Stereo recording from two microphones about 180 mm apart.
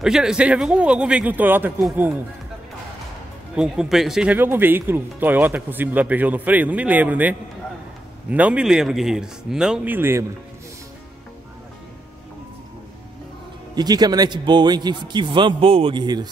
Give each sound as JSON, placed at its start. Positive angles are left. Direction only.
{"t": 0.0, "sound": "speech", "side_deg": -5}
{"t": 3.5, "sound": "a man's voice", "side_deg": -5}
{"t": 13.7, "sound": "a man's voice", "side_deg": -20}